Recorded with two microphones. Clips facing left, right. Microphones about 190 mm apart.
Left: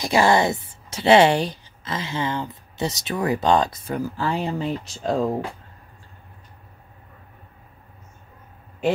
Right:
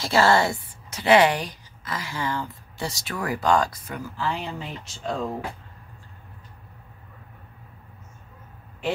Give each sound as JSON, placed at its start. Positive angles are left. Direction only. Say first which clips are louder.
{"t": 0.0, "sound": "speech", "louder": "left 2 dB", "side_deg": 15}
{"t": 3.9, "sound": "speech", "louder": "left 5 dB", "side_deg": 35}